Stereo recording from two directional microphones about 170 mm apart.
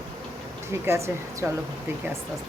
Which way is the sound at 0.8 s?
15° right (ahead or behind).